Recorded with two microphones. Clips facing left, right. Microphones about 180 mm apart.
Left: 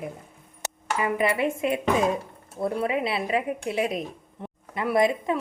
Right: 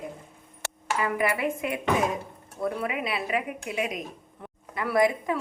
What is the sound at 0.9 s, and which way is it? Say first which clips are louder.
Speech: left 2 dB; 25° left (ahead or behind).